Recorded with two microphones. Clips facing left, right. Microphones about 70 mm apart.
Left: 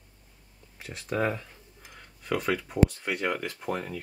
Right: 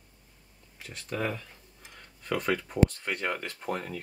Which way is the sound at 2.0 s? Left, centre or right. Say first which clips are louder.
Left 1 dB; centre.